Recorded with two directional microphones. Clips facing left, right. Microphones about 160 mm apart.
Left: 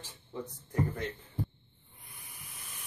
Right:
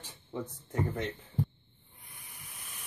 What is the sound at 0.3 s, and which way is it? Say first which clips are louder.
Speech: right 3 dB; 25° right (ahead or behind).